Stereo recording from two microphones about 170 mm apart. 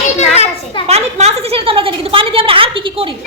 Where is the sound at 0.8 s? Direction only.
40° right (ahead or behind).